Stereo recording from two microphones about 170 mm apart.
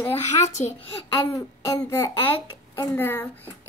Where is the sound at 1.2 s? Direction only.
20° left (ahead or behind).